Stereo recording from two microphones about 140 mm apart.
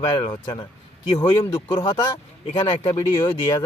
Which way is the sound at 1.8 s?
30° left (ahead or behind).